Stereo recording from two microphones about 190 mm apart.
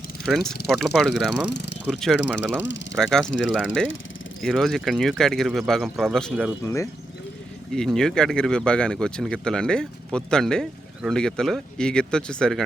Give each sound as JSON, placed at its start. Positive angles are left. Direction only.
{"t": 0.3, "sound": "speech", "side_deg": 0}
{"t": 1.5, "sound": "a sound", "side_deg": 65}
{"t": 1.9, "sound": "speech", "side_deg": 0}
{"t": 2.3, "sound": "speech", "side_deg": -10}
{"t": 2.9, "sound": "speech", "side_deg": 0}
{"t": 4.4, "sound": "speech", "side_deg": 0}
{"t": 7.7, "sound": "speech", "side_deg": 5}